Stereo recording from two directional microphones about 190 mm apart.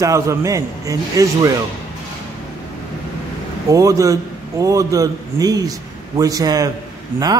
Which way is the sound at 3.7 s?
15° right (ahead or behind).